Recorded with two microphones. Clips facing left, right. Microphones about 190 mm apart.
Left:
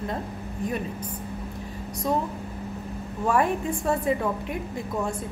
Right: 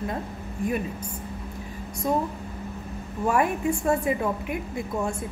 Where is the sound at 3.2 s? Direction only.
10° right (ahead or behind).